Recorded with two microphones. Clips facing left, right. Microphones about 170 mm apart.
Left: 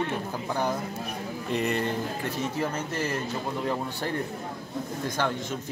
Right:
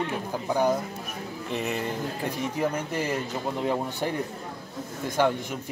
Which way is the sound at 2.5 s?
15° right (ahead or behind).